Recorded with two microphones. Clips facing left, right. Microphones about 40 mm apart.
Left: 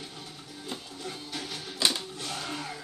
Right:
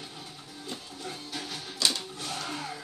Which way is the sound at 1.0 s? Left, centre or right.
Centre.